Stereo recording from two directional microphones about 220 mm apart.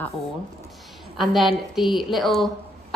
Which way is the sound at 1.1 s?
Centre (ahead or behind).